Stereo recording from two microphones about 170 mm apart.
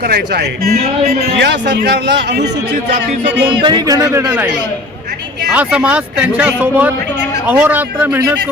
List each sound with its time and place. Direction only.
0.1 s a man's voice: 65° right (ahead or behind); by 2.5 s 90° right
3.4 s speech: 25° right (ahead or behind)
5.5 s speech: 10° right (ahead or behind)